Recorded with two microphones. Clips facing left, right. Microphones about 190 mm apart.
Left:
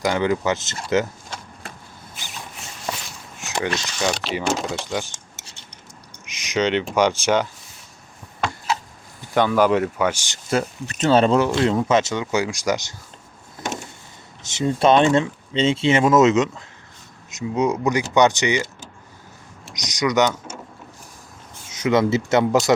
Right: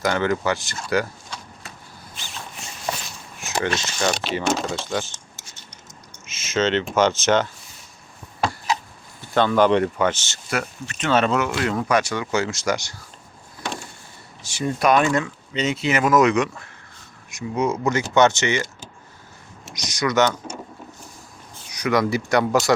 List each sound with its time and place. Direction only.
0.0 s speech: 15° left (ahead or behind)
3.5 s speech: 15° left (ahead or behind)
6.2 s a sound: 15° left (ahead or behind)
6.9 s speech: 15° left (ahead or behind)
9.3 s speech: 10° left (ahead or behind)
10.5 s speech: 35° left (ahead or behind)
14.4 s speech: 20° left (ahead or behind)
19.7 s speech: 15° left (ahead or behind)
21.7 s speech: 25° left (ahead or behind)